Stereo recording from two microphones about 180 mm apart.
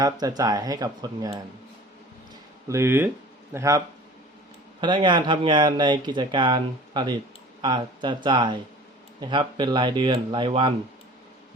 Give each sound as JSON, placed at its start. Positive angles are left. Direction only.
{"t": 0.0, "sound": "speech", "side_deg": -20}
{"t": 2.6, "sound": "speech", "side_deg": -15}